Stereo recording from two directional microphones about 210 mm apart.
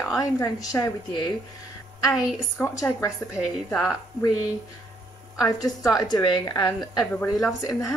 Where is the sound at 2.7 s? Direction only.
15° left (ahead or behind).